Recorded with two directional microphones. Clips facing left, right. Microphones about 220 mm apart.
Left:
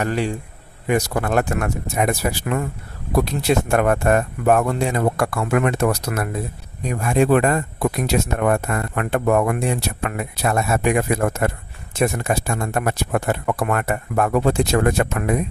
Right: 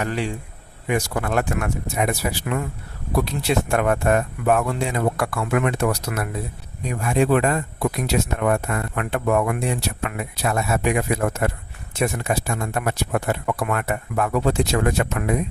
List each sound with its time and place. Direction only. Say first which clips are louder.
0.0 s speech: left 3 dB; 45° left (ahead or behind)